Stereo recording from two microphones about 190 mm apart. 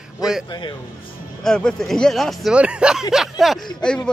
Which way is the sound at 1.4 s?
5° left (ahead or behind).